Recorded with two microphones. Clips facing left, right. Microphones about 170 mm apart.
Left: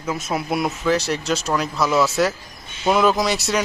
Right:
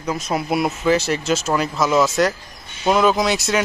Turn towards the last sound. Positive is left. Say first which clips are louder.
# right 2 dB
turn(degrees=0)  # may be behind; listen again after turning